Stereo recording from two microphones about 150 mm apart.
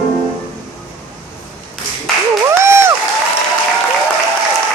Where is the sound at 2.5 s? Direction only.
15° right (ahead or behind).